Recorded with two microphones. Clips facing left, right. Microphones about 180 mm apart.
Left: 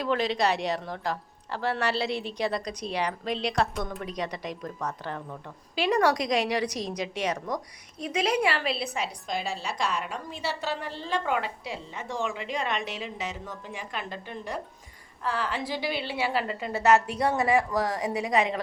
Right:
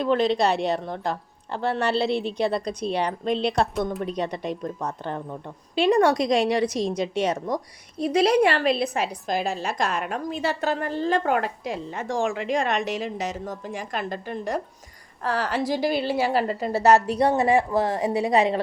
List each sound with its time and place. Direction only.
0.0 s a woman's voice: 30° right (ahead or behind)